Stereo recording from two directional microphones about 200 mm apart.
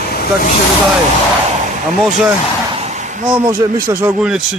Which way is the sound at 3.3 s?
45° right (ahead or behind).